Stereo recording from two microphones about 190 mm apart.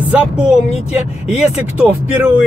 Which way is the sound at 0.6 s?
35° left (ahead or behind).